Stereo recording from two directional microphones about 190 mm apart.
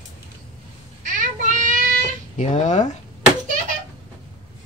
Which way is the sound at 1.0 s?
40° right (ahead or behind).